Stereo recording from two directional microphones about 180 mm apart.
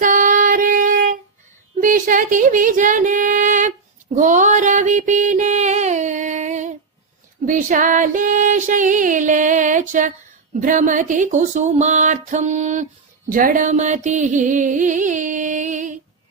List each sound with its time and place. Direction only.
0.0 s child singing: 50° right (ahead or behind)
1.8 s a sound: 50° right (ahead or behind)
7.4 s female singing: 45° right (ahead or behind)
13.3 s music: 50° right (ahead or behind)